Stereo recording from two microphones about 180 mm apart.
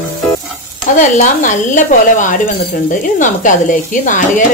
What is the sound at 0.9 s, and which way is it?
Speech, 45° left (ahead or behind).